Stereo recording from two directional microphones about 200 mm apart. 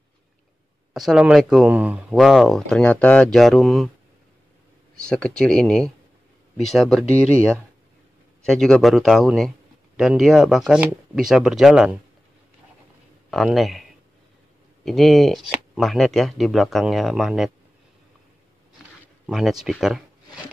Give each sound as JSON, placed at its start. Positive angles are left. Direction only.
{"t": 0.9, "sound": "speech", "side_deg": -5}
{"t": 4.9, "sound": "speech", "side_deg": 5}
{"t": 8.5, "sound": "speech", "side_deg": 5}
{"t": 13.3, "sound": "speech", "side_deg": 0}
{"t": 14.9, "sound": "speech", "side_deg": 0}
{"t": 19.2, "sound": "speech", "side_deg": 0}